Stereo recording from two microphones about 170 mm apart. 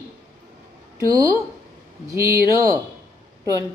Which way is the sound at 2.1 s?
15° right (ahead or behind).